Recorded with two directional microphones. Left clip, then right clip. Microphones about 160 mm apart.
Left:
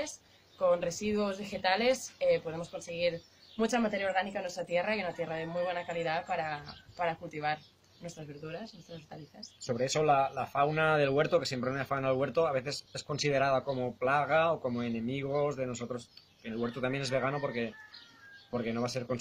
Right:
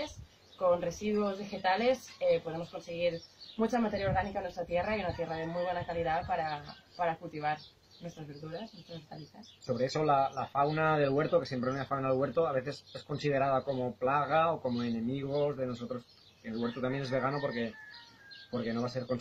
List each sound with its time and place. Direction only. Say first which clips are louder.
0.6 s a woman's voice: left 1 dB; 5° left (ahead or behind)
9.8 s speech: left 1 dB; 30° left (ahead or behind)
16.8 s speech: left 1 dB; 30° left (ahead or behind)